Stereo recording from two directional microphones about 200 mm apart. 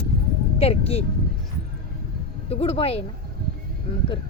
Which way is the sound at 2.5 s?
30° left (ahead or behind).